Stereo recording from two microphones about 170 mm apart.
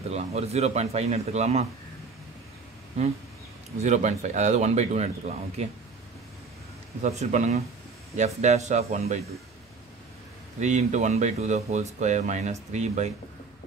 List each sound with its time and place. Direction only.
0.1 s speech: 40° right (ahead or behind)
3.8 s speech: 45° right (ahead or behind)
7.0 s speech: 45° right (ahead or behind)
10.6 s speech: 45° right (ahead or behind)